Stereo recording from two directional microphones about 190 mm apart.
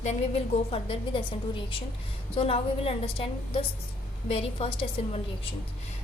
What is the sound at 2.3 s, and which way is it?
A woman's voice, 30° left (ahead or behind).